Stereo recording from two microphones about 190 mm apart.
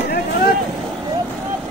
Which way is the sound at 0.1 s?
55° left (ahead or behind).